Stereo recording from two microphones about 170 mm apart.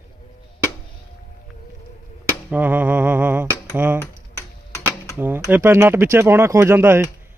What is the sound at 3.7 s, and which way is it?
Speech, 10° right (ahead or behind).